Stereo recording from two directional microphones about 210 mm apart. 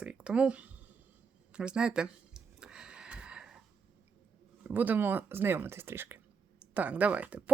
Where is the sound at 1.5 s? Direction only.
5° right (ahead or behind).